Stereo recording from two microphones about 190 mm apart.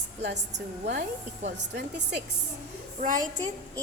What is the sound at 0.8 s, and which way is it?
Speech, 65° right (ahead or behind).